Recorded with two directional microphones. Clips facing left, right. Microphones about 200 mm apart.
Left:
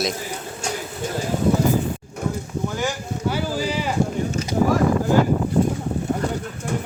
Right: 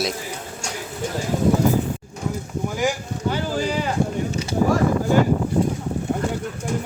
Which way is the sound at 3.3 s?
5° left (ahead or behind).